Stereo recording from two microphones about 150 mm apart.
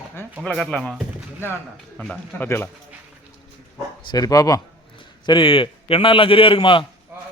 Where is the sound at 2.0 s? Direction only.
5° left (ahead or behind).